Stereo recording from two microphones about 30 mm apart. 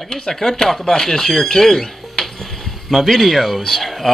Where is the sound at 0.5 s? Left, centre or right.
Centre.